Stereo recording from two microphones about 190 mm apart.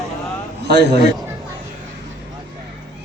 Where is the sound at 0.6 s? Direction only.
65° right (ahead or behind).